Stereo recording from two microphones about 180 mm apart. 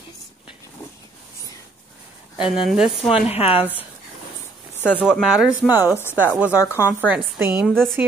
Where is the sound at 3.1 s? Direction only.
35° left (ahead or behind).